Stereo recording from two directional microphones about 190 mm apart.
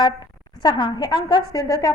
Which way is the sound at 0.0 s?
25° left (ahead or behind).